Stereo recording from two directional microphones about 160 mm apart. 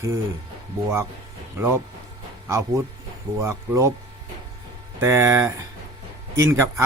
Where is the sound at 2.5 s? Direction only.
20° right (ahead or behind).